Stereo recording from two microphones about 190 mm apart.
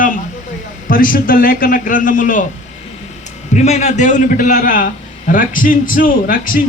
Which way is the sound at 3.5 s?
35° left (ahead or behind).